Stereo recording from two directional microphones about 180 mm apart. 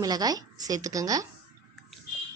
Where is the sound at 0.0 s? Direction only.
20° right (ahead or behind).